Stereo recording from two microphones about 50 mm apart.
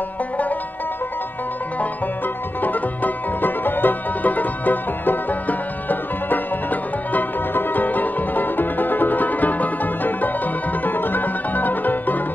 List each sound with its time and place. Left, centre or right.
2.6 s music: left